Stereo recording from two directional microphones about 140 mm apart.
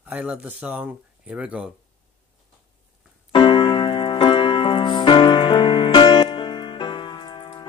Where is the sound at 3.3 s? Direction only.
35° left (ahead or behind).